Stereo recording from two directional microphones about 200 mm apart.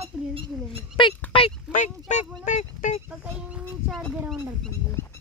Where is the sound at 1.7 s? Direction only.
35° left (ahead or behind).